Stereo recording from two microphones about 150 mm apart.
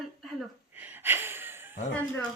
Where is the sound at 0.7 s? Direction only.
10° right (ahead or behind).